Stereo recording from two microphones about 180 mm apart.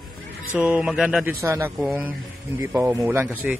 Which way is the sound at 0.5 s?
10° right (ahead or behind).